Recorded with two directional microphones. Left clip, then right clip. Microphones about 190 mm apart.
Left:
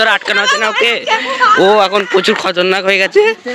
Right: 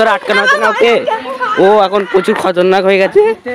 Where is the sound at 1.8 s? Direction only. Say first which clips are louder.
Right 1 dB; 15° right (ahead or behind).